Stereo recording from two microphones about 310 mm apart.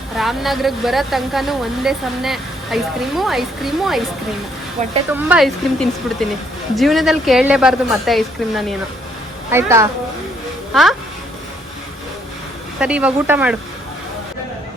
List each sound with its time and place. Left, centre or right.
0.2 s speech: centre
4.8 s speech: right
5.1 s a woman's voice: centre
12.8 s speech: centre